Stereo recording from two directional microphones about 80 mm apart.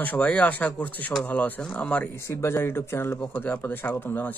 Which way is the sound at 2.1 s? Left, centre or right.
Left.